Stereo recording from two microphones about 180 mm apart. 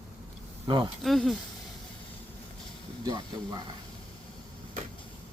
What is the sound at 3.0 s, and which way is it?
Speech, 20° right (ahead or behind).